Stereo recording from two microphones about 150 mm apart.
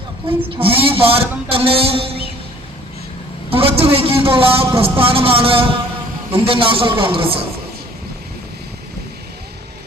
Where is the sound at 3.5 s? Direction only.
40° right (ahead or behind).